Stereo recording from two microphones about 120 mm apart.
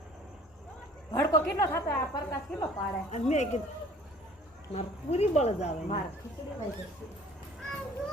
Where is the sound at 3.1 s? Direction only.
70° left (ahead or behind).